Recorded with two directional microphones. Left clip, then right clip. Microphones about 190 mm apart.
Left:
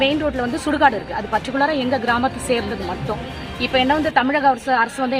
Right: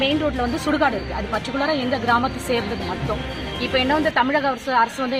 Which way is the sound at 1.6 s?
30° left (ahead or behind).